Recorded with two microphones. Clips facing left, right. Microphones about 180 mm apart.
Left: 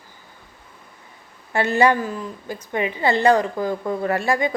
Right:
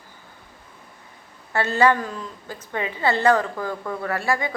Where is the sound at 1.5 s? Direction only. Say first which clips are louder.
Left 2 dB; 15° left (ahead or behind).